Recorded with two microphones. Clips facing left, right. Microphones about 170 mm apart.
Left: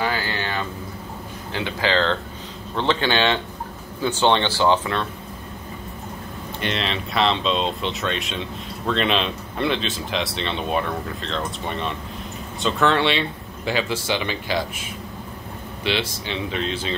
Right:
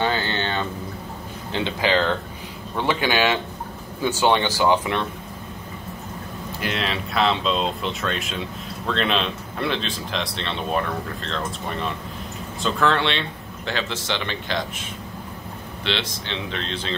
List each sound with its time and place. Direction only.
0.0 s a sound: 25° right (ahead or behind)
1.5 s speech: 20° right (ahead or behind)
6.6 s speech: 5° right (ahead or behind)